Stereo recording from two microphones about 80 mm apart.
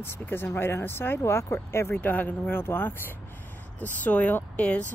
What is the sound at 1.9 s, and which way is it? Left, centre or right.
Speech, centre.